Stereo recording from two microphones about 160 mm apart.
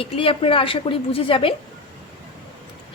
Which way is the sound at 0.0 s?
35° left (ahead or behind).